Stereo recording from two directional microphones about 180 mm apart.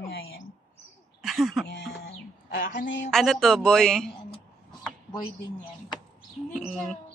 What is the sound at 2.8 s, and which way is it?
Speech, 90° left.